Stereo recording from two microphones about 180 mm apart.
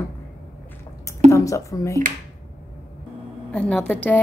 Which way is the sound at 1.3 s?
15° left (ahead or behind).